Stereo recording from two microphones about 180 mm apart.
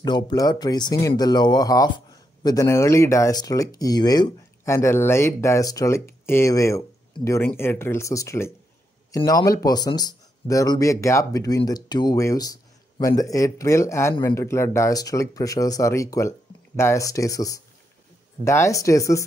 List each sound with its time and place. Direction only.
0.0 s speech: 25° left (ahead or behind)